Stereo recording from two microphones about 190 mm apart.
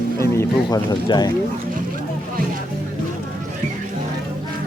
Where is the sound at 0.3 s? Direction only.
20° left (ahead or behind).